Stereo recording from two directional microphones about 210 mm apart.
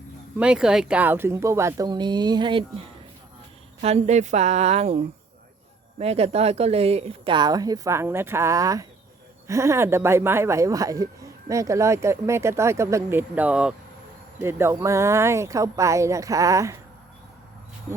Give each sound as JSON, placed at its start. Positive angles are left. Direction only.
{"t": 0.3, "sound": "speech", "side_deg": -5}